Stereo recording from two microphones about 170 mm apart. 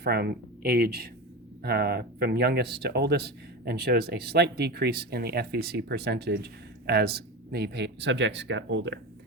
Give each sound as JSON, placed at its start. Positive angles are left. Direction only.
{"t": 0.0, "sound": "speech", "side_deg": -70}